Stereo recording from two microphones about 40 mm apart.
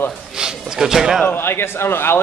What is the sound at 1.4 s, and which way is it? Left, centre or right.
Speech, left.